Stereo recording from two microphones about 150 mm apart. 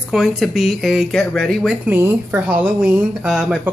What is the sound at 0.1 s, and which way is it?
Speech, 5° right (ahead or behind).